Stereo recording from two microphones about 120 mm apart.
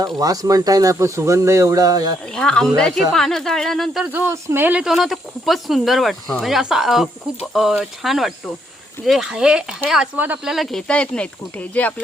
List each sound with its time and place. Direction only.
0.0 s speech: 30° right (ahead or behind)
2.3 s speech: 5° left (ahead or behind)
4.1 s speech: 15° right (ahead or behind)
4.8 s speech: 5° right (ahead or behind); by 12.0 s 15° left (ahead or behind)